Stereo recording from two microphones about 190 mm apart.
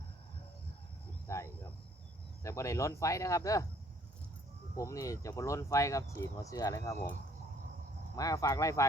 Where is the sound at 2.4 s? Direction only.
15° left (ahead or behind).